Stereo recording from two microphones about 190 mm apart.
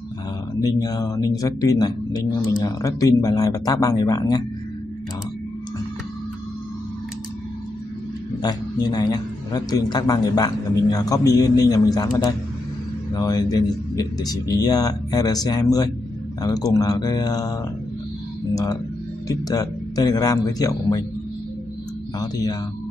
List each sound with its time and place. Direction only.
0.6 s a man's voice: 20° left (ahead or behind)
8.4 s a man's voice: 20° left (ahead or behind)
18.5 s a sound: 15° left (ahead or behind)
19.2 s a man's voice: 20° left (ahead or behind)
22.2 s a man's voice: 20° left (ahead or behind)